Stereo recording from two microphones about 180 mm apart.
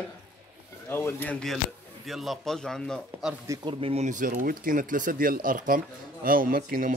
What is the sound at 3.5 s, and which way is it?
Speech, 30° right (ahead or behind).